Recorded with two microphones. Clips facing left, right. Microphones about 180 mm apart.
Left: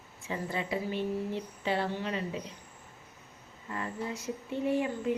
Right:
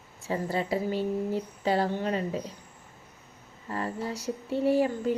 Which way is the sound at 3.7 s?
35° right (ahead or behind).